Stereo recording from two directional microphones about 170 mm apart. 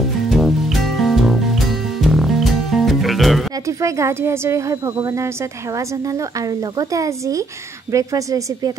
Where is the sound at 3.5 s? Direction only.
20° right (ahead or behind).